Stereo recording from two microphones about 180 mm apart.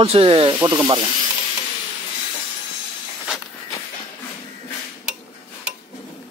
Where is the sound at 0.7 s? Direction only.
15° right (ahead or behind).